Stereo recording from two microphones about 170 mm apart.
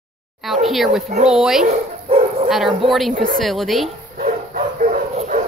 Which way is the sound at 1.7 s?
35° right (ahead or behind).